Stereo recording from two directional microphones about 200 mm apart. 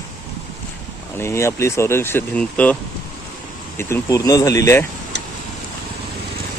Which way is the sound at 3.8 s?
15° left (ahead or behind).